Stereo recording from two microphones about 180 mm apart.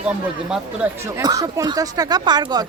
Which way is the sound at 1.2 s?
20° right (ahead or behind).